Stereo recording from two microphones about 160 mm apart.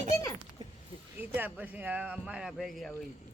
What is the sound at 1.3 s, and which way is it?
Speech, 10° right (ahead or behind).